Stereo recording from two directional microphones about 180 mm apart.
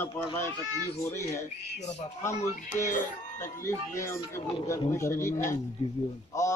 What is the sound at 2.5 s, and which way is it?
Speech, 40° left (ahead or behind).